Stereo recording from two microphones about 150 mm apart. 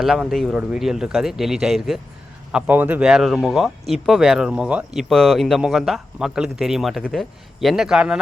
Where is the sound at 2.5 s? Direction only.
10° right (ahead or behind).